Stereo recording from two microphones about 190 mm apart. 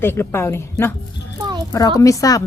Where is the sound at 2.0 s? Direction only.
20° left (ahead or behind).